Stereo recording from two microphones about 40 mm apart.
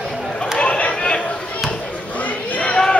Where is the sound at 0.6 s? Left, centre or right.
Left.